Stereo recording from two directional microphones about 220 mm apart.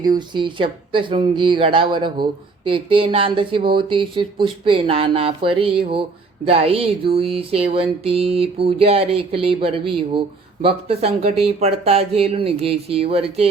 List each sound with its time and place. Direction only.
0.0 s speech: 20° right (ahead or behind)